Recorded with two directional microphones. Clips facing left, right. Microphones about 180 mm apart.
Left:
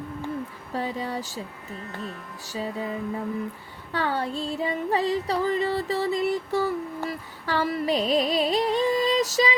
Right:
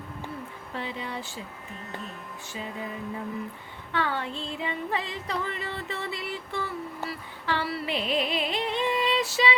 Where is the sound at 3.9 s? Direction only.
40° left (ahead or behind).